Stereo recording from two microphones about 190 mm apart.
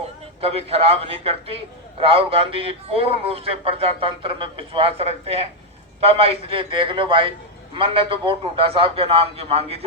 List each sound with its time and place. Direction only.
0.4 s a man's voice: 30° right (ahead or behind)